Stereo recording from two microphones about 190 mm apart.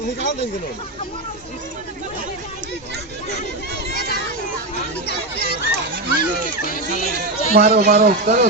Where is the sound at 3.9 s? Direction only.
55° left (ahead or behind).